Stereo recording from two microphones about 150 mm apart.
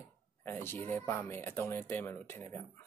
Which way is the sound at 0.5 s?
15° left (ahead or behind).